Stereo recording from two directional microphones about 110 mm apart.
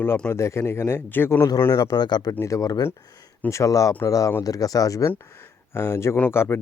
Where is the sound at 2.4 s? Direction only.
30° left (ahead or behind).